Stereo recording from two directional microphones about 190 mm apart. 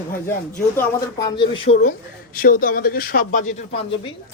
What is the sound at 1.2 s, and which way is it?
Speech, 25° left (ahead or behind).